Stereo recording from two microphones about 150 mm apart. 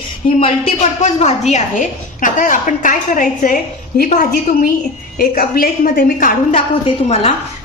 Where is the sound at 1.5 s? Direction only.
55° left (ahead or behind).